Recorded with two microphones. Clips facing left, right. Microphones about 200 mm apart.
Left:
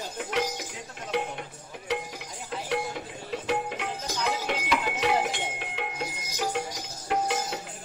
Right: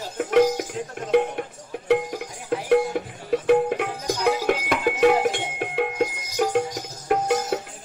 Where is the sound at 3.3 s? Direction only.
50° right (ahead or behind).